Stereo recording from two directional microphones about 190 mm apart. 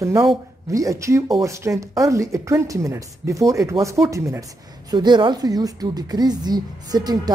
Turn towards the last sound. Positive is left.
turn(degrees=-20)  # may be behind; listen again after turning